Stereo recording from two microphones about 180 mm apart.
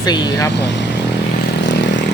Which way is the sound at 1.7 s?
75° left (ahead or behind).